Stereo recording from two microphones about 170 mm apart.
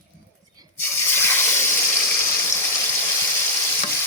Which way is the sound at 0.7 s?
15° left (ahead or behind).